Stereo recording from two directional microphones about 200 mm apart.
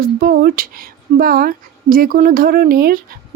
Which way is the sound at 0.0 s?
45° right (ahead or behind).